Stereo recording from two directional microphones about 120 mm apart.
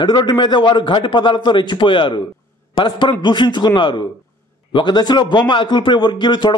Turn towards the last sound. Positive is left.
turn(degrees=40)  # may be behind; listen again after turning